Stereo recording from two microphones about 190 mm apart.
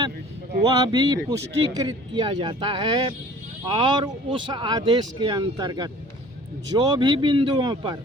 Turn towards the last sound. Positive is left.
turn(degrees=-25)  # may be behind; listen again after turning